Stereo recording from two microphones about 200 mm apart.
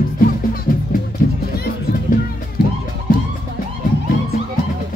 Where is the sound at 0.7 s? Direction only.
45° left (ahead or behind).